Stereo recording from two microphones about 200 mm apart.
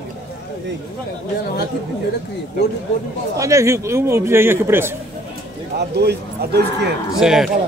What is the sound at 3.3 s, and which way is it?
A man's voice, 15° right (ahead or behind).